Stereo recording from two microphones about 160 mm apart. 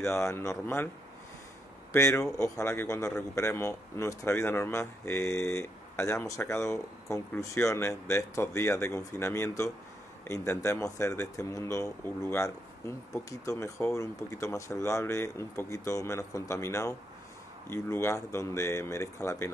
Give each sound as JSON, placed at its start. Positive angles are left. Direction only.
{"t": 0.0, "sound": "speech", "side_deg": 20}
{"t": 1.9, "sound": "speech", "side_deg": 20}